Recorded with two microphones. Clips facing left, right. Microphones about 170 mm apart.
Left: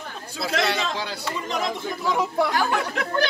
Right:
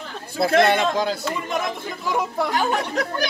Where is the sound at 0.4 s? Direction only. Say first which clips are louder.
Right 8 dB; 50° right (ahead or behind).